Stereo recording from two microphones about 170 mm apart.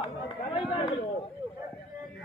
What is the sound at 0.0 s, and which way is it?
Run, 30° left (ahead or behind).